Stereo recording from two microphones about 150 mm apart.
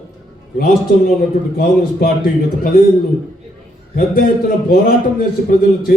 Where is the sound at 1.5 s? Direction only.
80° left.